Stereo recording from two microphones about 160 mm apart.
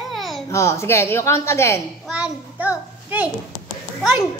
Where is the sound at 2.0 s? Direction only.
10° right (ahead or behind).